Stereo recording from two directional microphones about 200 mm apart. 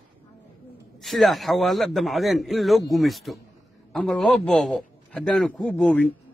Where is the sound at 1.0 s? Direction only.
Centre (ahead or behind).